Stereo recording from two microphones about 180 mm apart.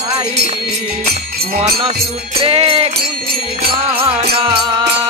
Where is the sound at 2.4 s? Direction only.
30° right (ahead or behind).